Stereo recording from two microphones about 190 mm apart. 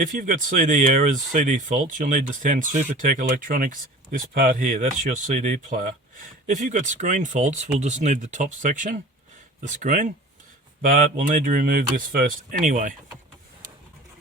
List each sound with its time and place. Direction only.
0.0 s speech: 45° right (ahead or behind)